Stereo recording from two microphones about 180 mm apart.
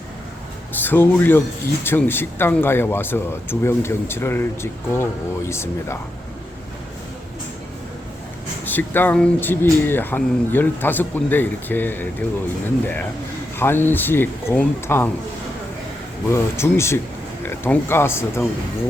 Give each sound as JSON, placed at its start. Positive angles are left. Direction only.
{"t": 0.8, "sound": "speech", "side_deg": 10}
{"t": 8.6, "sound": "speech", "side_deg": 10}
{"t": 13.6, "sound": "speech", "side_deg": 10}
{"t": 16.3, "sound": "speech", "side_deg": 15}